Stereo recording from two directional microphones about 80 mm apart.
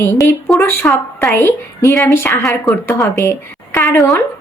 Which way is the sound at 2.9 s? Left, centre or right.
Left.